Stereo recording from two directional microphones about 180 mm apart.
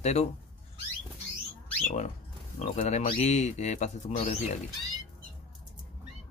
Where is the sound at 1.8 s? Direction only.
40° left (ahead or behind).